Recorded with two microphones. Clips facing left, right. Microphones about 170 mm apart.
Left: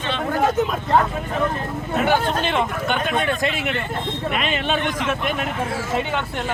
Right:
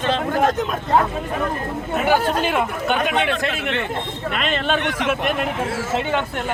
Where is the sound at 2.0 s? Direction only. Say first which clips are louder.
Right 3 dB; 10° right (ahead or behind).